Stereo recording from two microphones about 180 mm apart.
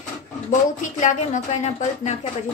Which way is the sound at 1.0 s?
40° left (ahead or behind).